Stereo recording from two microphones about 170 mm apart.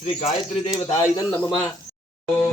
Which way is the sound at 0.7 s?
25° left (ahead or behind).